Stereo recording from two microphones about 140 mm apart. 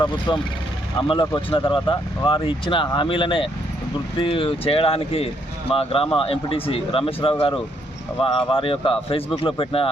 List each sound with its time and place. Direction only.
0.3 s speech: 35° left (ahead or behind)